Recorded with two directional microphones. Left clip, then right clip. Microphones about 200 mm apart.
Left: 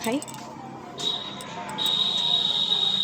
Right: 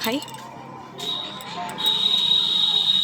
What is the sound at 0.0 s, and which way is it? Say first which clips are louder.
Speech: right 2 dB; 10° left (ahead or behind).